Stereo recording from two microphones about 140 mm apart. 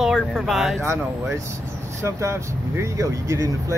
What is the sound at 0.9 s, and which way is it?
Speech, 20° right (ahead or behind).